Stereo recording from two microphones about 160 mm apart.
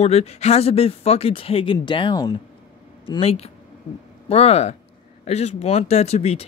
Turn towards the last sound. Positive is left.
turn(degrees=40)  # may be behind; listen again after turning